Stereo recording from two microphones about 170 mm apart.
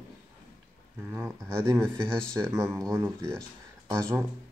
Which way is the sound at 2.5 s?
15° right (ahead or behind).